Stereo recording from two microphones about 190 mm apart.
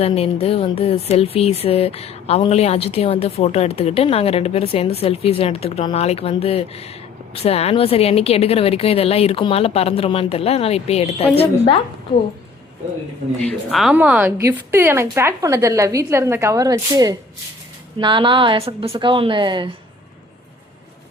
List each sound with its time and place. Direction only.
0.0 s speech: 30° left (ahead or behind)
13.4 s a woman's voice: centre (ahead or behind); by 19.7 s 25° right (ahead or behind)